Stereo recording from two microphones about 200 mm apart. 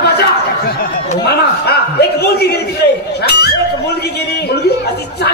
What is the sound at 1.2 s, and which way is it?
A man's voice, 55° left (ahead or behind).